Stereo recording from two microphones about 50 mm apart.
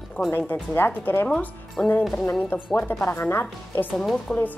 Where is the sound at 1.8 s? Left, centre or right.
Centre.